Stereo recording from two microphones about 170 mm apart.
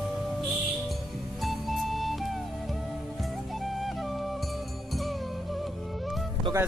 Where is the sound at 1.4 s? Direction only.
Centre (ahead or behind).